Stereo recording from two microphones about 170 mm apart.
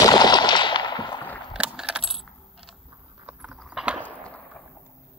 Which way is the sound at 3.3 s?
10° right (ahead or behind).